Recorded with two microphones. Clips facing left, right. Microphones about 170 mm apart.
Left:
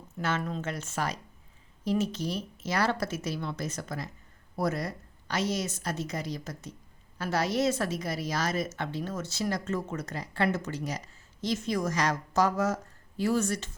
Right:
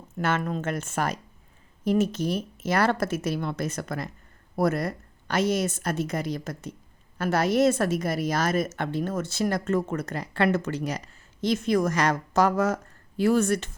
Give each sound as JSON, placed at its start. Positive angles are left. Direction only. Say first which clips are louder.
{"t": 0.2, "sound": "a woman's voice", "louder": "right 5 dB", "side_deg": -55}